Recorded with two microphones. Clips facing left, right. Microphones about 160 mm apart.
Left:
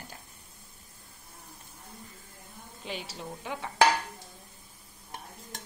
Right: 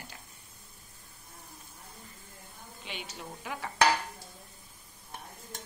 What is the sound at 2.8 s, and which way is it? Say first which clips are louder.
Speech: left 4 dB; 35° left (ahead or behind).